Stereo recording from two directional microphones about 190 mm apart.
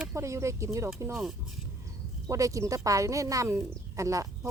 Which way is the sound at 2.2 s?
15° right (ahead or behind).